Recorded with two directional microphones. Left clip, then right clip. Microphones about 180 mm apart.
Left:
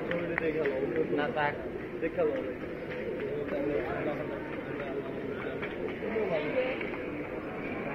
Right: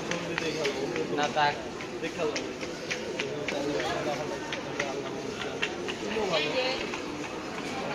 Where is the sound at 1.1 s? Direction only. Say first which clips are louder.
Right 7 dB; 65° right (ahead or behind).